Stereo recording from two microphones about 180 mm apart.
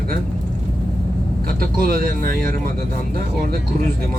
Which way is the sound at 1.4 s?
55° right (ahead or behind).